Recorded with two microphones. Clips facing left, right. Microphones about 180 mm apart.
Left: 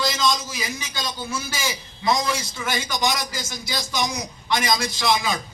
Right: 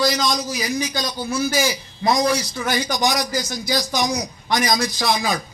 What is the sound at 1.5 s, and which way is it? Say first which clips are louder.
Speech: right 8 dB; 45° right (ahead or behind).